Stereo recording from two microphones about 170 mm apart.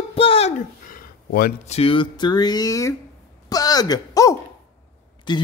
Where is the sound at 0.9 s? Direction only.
55° left (ahead or behind).